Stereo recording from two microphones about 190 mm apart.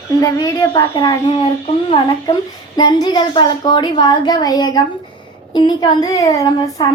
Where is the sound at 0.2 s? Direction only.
20° left (ahead or behind).